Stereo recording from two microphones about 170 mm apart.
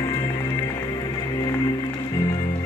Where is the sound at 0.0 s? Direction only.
20° left (ahead or behind).